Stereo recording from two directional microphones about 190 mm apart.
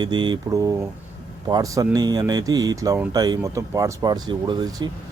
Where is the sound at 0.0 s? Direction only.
25° right (ahead or behind).